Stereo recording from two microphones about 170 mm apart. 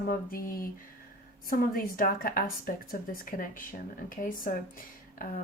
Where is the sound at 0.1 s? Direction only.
55° left (ahead or behind).